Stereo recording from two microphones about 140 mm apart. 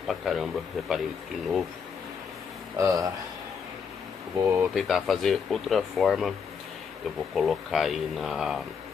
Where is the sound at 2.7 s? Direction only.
20° right (ahead or behind).